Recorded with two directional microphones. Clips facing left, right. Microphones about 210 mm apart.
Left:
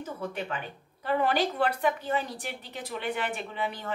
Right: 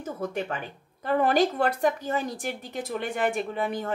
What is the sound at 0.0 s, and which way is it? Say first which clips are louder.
A woman's voice: right 4 dB; 45° right (ahead or behind).